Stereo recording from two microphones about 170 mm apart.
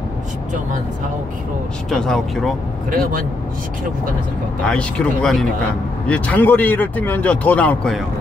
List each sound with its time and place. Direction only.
1.9 s speech: 5° left (ahead or behind)
2.9 s speech: 55° right (ahead or behind)
4.6 s speech: 5° left (ahead or behind)